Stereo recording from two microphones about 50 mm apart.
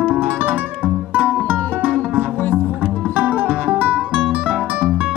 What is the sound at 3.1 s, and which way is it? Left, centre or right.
Music, right.